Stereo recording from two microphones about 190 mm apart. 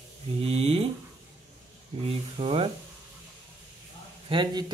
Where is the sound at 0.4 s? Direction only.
30° right (ahead or behind).